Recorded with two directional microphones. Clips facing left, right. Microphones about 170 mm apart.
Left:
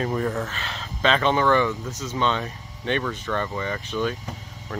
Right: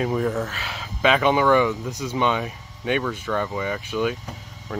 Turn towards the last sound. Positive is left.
turn(degrees=-10)  # may be behind; listen again after turning